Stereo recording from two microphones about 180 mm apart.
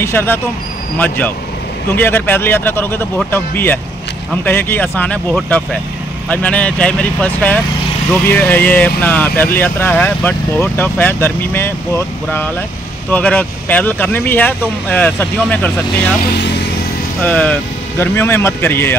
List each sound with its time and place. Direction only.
0.0 s speech: 10° left (ahead or behind)
16.2 s speech: 65° left (ahead or behind)
17.2 s speech: 10° left (ahead or behind)